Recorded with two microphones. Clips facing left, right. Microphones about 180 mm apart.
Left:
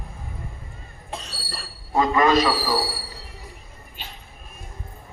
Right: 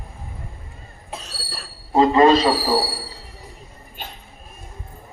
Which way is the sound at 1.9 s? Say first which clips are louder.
Right 5 dB; 30° right (ahead or behind).